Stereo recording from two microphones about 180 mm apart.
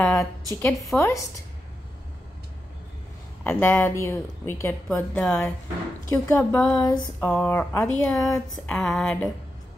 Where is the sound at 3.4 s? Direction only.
15° left (ahead or behind).